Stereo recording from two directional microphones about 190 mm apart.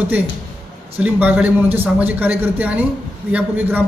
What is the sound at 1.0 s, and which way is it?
A man's voice, 10° right (ahead or behind).